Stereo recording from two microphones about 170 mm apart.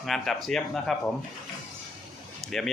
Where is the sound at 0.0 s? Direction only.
Centre (ahead or behind).